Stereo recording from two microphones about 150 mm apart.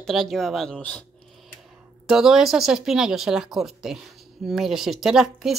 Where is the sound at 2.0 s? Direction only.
5° right (ahead or behind).